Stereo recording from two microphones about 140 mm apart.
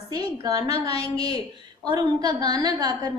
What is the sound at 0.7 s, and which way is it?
Speech, 45° left (ahead or behind).